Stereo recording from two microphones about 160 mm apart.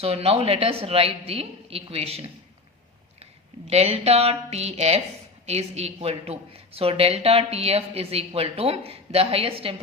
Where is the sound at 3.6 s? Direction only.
40° right (ahead or behind).